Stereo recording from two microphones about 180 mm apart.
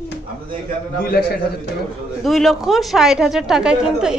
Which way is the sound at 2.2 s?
Centre (ahead or behind).